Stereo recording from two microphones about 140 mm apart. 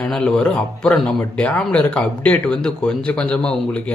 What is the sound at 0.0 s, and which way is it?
Speech, 5° left (ahead or behind).